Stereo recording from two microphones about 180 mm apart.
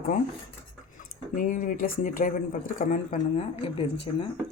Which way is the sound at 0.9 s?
45° left (ahead or behind).